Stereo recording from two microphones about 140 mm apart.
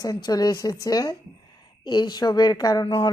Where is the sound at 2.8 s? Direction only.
40° left (ahead or behind).